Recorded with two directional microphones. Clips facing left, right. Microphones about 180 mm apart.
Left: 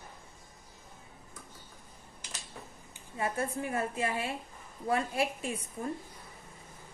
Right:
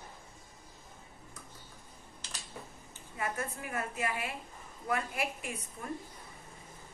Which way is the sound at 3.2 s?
30° left (ahead or behind).